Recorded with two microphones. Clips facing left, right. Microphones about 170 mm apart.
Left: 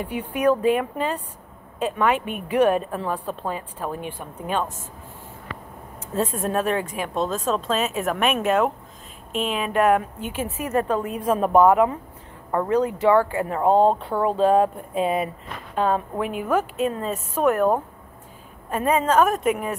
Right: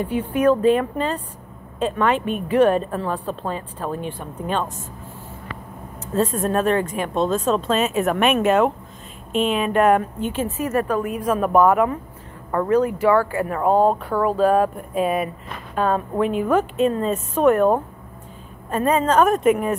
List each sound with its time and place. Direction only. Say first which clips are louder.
0.0 s a woman's voice: right 3 dB; 15° left (ahead or behind)
6.1 s a woman's voice: right 3 dB; 10° left (ahead or behind)